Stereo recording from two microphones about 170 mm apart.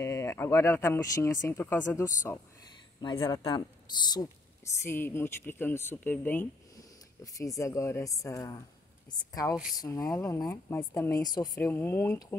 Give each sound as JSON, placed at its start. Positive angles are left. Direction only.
{"t": 0.0, "sound": "speech", "side_deg": 15}
{"t": 3.0, "sound": "speech", "side_deg": 30}